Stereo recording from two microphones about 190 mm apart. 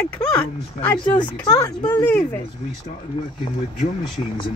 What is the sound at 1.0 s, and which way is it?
Speech, 25° left (ahead or behind).